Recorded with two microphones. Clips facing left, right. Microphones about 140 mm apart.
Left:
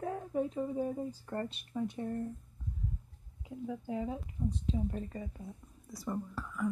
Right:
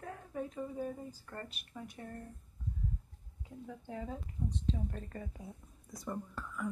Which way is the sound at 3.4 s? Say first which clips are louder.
Left 7 dB; 10° left (ahead or behind).